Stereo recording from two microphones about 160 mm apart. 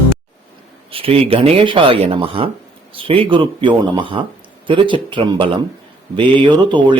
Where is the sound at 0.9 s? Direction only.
35° right (ahead or behind).